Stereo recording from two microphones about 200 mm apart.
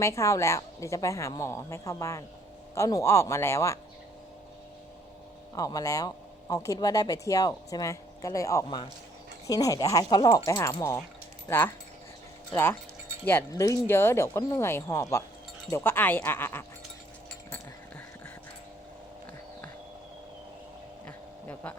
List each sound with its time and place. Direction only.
0.0 s speech: 15° left (ahead or behind)
5.5 s speech: 15° left (ahead or behind)
21.4 s a sound: 10° left (ahead or behind)